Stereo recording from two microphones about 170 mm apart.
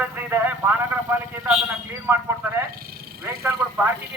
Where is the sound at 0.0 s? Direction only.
10° right (ahead or behind).